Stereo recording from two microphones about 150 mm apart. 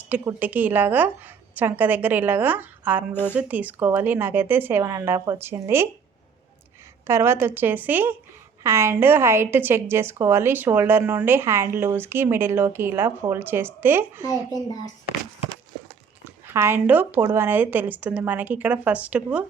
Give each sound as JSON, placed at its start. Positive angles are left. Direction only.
{"t": 0.0, "sound": "a woman's voice", "side_deg": -10}
{"t": 7.1, "sound": "a woman's voice", "side_deg": -15}
{"t": 14.3, "sound": "a child's voice", "side_deg": 25}
{"t": 16.5, "sound": "a woman's voice", "side_deg": -15}